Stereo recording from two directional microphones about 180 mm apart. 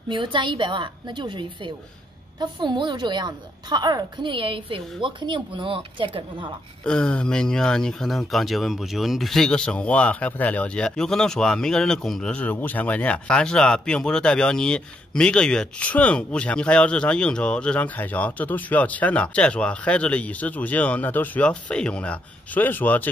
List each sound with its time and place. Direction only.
0.1 s a woman's voice: 25° right (ahead or behind)
6.8 s speech: 5° left (ahead or behind)